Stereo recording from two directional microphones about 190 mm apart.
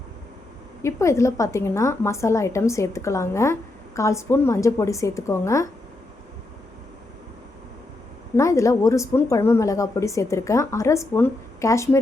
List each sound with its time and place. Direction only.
0.8 s a woman's voice: 15° left (ahead or behind)
8.4 s a woman's voice: 15° left (ahead or behind)